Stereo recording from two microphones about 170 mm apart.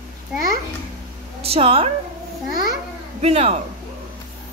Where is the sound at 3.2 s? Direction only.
35° right (ahead or behind).